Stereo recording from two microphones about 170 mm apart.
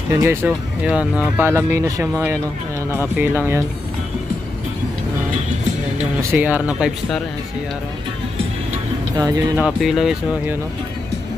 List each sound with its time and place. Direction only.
0.1 s speech: 15° right (ahead or behind)
6.3 s speech: 10° right (ahead or behind)
9.1 s speech: 20° right (ahead or behind)
9.6 s speech: centre (ahead or behind)